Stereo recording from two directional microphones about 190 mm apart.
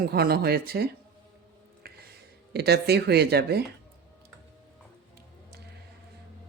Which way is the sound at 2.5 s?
60° right (ahead or behind).